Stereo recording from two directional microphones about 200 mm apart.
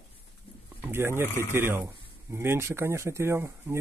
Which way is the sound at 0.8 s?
10° right (ahead or behind).